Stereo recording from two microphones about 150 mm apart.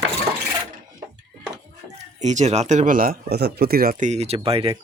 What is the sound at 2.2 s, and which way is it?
Speech, 50° right (ahead or behind).